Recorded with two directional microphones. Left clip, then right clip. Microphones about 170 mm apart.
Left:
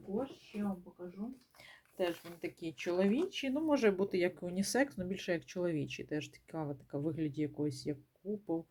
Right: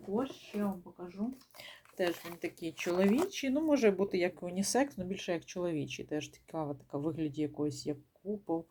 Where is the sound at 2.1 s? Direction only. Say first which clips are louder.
Right 5 dB; 45° right (ahead or behind).